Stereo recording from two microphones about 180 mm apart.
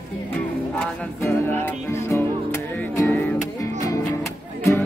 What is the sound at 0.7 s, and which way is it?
Music, 5° left (ahead or behind).